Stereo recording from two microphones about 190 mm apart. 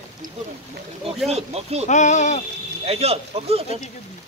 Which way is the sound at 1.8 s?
40° left (ahead or behind).